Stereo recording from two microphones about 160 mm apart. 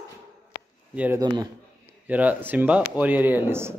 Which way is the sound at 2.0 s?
10° right (ahead or behind).